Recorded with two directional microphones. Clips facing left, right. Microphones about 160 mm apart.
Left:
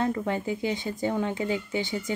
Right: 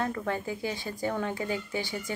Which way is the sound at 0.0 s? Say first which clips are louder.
Left 4 dB; 20° left (ahead or behind).